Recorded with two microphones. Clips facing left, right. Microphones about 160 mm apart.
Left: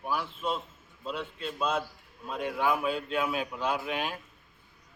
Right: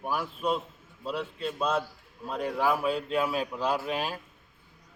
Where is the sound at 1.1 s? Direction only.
35° right (ahead or behind).